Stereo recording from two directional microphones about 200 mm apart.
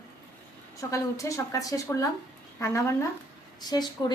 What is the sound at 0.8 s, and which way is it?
A woman's voice, 15° left (ahead or behind).